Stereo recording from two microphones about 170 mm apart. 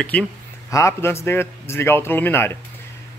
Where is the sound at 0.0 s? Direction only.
10° left (ahead or behind).